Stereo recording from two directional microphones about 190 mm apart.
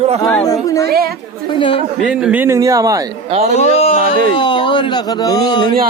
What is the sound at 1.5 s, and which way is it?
Speech, 25° left (ahead or behind).